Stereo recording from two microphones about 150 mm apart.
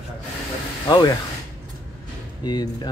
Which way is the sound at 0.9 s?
30° left (ahead or behind).